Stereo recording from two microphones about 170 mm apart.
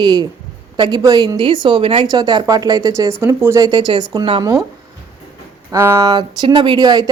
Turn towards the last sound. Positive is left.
turn(degrees=-25)  # may be behind; listen again after turning